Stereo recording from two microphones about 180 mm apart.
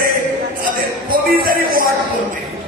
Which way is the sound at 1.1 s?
50° right (ahead or behind).